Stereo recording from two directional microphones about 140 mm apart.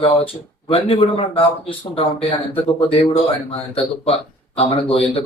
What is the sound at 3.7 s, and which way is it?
Speech, 40° left (ahead or behind).